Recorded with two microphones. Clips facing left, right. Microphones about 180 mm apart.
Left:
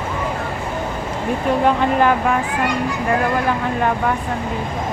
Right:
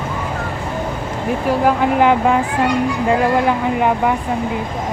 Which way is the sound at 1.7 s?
15° right (ahead or behind).